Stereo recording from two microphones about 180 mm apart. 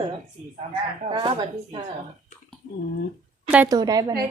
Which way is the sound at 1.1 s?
25° right (ahead or behind).